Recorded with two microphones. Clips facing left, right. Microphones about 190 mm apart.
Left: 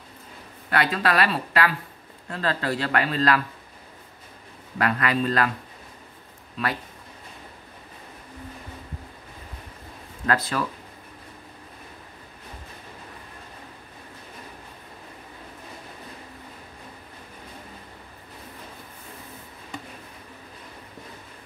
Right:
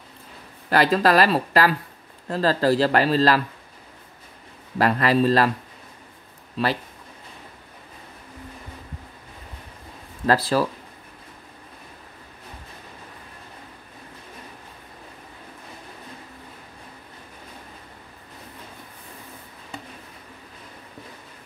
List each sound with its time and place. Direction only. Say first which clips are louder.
0.7 s speech: right 5 dB; 35° right (ahead or behind)
4.7 s speech: right 5 dB; 35° right (ahead or behind)
10.2 s speech: right 5 dB; 35° right (ahead or behind)